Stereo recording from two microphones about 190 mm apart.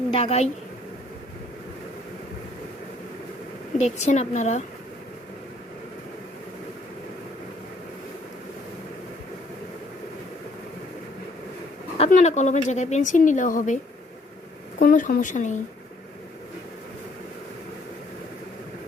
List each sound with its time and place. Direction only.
0.1 s speech: 30° left (ahead or behind)
3.8 s speech: 35° left (ahead or behind)
11.9 s speech: 35° left (ahead or behind)
14.8 s speech: 45° left (ahead or behind)